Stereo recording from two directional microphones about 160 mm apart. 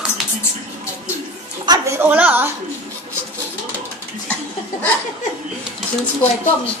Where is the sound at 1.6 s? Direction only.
25° right (ahead or behind).